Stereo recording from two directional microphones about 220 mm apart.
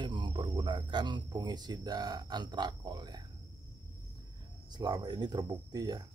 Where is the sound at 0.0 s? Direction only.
20° right (ahead or behind).